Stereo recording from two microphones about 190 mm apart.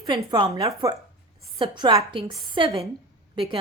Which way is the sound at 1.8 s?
25° right (ahead or behind).